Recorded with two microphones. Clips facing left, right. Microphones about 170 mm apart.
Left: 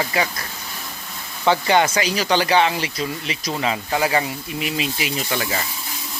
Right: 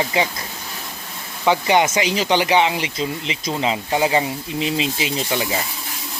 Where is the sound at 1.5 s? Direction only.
15° right (ahead or behind).